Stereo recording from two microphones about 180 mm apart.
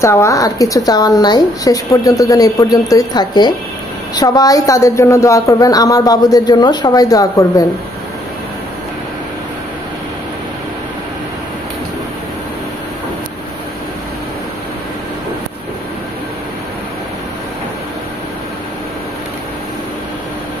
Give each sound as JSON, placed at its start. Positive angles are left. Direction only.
{"t": 0.0, "sound": "speech", "side_deg": 15}